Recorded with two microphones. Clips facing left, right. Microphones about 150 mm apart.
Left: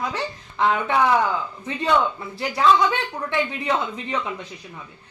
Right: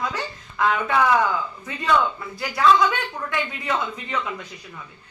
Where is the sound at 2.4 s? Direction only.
25° left (ahead or behind).